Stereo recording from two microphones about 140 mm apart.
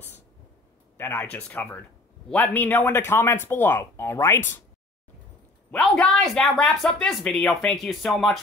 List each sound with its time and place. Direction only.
0.9 s a man's voice: 15° left (ahead or behind)
5.7 s speech: 5° left (ahead or behind)